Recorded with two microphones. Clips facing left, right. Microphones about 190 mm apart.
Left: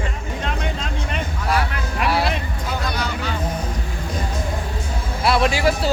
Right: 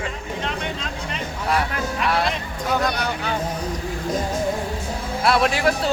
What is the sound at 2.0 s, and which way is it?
Music, 5° left (ahead or behind).